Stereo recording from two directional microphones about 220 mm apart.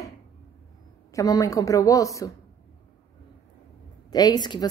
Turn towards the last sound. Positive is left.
turn(degrees=20)  # may be behind; listen again after turning